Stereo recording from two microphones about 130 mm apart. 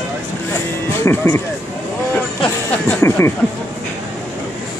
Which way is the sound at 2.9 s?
20° left (ahead or behind).